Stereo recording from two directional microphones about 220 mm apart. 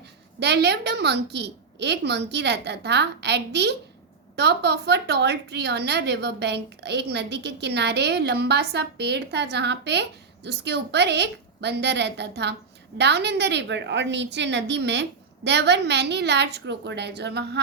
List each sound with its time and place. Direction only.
0.3 s a woman's voice: 50° right (ahead or behind)